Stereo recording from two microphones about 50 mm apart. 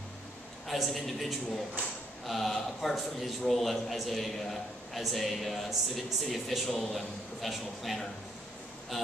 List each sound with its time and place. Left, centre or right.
0.7 s a man's voice: centre
1.8 s speech: right
2.2 s a man's voice: centre